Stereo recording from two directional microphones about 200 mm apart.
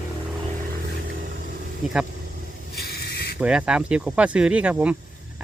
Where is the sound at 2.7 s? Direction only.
50° left (ahead or behind).